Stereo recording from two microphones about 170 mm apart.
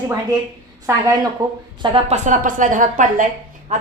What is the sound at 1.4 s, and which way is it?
Speech, 25° right (ahead or behind).